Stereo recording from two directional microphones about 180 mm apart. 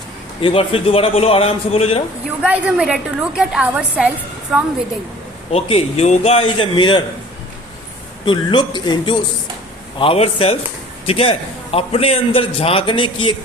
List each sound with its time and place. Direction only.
0.4 s a man's voice: 30° left (ahead or behind)
2.4 s a woman's voice: 5° right (ahead or behind)
5.5 s a man's voice: 35° left (ahead or behind)
8.2 s a man's voice: 25° left (ahead or behind)